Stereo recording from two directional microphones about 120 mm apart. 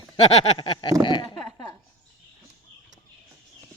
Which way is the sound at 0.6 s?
40° left (ahead or behind).